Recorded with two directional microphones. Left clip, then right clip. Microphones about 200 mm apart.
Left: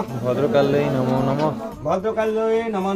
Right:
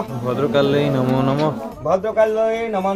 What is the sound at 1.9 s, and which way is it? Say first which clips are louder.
Speech: right 5 dB; 40° right (ahead or behind).